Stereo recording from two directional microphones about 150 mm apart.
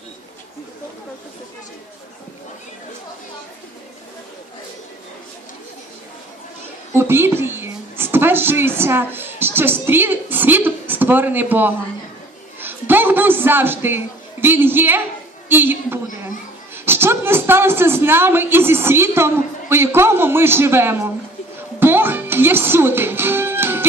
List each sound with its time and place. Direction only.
6.9 s a woman's voice: 15° right (ahead or behind)
12.5 s a sound: 15° right (ahead or behind)
14.4 s a woman's voice: 15° right (ahead or behind)
21.8 s music: 15° right (ahead or behind)